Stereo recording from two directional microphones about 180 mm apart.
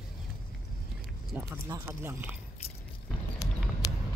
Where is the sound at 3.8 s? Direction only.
20° left (ahead or behind).